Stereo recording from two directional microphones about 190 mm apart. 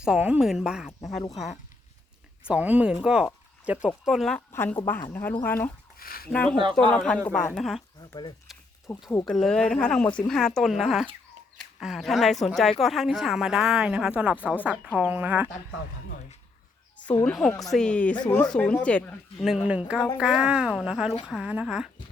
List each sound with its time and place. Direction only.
0.0 s speech: 5° right (ahead or behind)
2.5 s speech: 10° right (ahead or behind)
4.5 s speech: 10° left (ahead or behind)
6.0 s speech: 50° left (ahead or behind)
6.3 s speech: 5° left (ahead or behind)
8.5 s a sound: centre (ahead or behind)
8.9 s a woman's voice: 15° left (ahead or behind); by 15.4 s 10° right (ahead or behind)
17.1 s speech: 5° left (ahead or behind)